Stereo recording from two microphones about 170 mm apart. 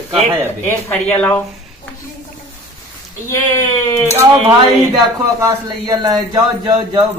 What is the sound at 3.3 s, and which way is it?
Speech, 20° left (ahead or behind).